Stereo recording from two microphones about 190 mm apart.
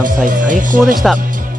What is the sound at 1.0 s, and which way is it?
Speech, centre (ahead or behind).